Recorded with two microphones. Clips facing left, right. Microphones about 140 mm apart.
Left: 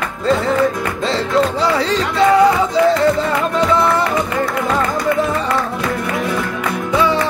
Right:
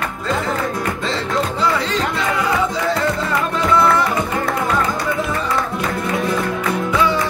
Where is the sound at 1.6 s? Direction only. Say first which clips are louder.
Left 3 dB; 35° left (ahead or behind).